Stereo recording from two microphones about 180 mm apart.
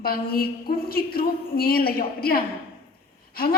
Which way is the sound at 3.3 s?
55° left (ahead or behind).